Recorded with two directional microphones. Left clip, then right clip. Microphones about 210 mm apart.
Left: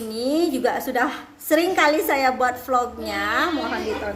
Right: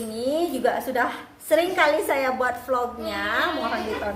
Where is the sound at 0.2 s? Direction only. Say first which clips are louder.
Left 2 dB; 35° left (ahead or behind).